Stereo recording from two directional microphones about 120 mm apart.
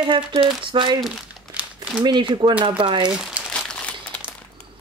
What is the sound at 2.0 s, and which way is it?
Speech, 40° right (ahead or behind).